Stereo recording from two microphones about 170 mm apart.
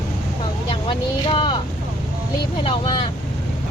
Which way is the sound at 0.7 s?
30° left (ahead or behind).